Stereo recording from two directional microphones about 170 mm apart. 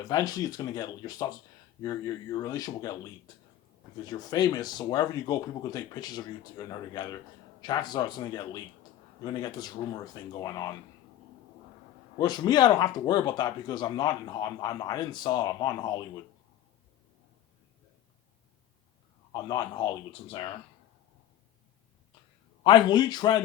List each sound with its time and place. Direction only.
0.0 s speech: 20° left (ahead or behind)
12.1 s speech: 25° left (ahead or behind)
19.3 s speech: 25° left (ahead or behind)
22.6 s speech: 25° left (ahead or behind)